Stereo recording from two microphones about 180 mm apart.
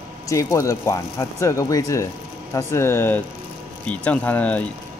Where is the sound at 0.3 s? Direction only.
15° left (ahead or behind).